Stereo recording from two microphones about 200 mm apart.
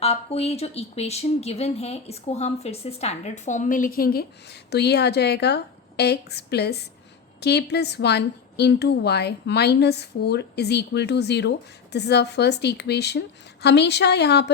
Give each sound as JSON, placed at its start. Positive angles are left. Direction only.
{"t": 0.0, "sound": "a woman's voice", "side_deg": 30}